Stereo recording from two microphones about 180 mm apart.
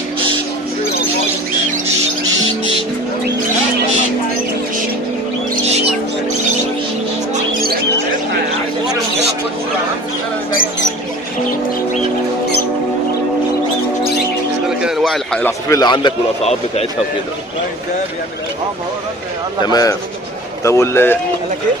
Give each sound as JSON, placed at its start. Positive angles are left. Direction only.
{"t": 14.8, "sound": "a sound", "side_deg": 0}
{"t": 15.4, "sound": "a man's voice", "side_deg": 20}
{"t": 19.6, "sound": "a man's voice", "side_deg": 20}